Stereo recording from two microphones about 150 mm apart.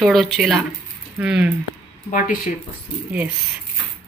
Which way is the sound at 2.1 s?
60° left (ahead or behind).